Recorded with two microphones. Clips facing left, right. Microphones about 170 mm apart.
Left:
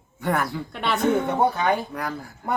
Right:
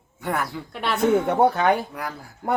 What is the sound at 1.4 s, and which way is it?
Speech, 70° right (ahead or behind).